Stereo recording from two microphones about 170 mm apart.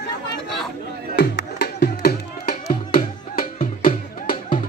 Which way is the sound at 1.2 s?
70° left (ahead or behind).